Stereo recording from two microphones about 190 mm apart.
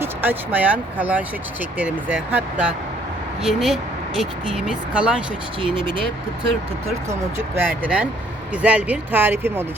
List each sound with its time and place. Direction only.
0.0 s speech: 10° right (ahead or behind)
7.1 s speech: 15° right (ahead or behind)